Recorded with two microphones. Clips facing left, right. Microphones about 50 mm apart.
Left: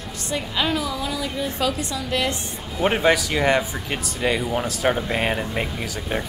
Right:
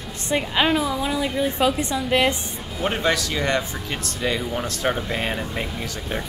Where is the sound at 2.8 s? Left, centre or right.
Centre.